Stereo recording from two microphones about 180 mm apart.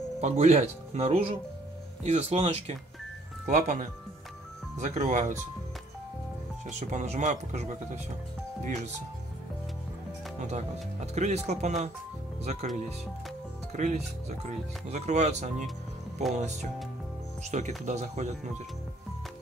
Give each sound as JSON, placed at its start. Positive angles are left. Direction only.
{"t": 0.2, "sound": "speech", "side_deg": -40}
{"t": 6.6, "sound": "speech", "side_deg": -40}
{"t": 11.1, "sound": "speech", "side_deg": -40}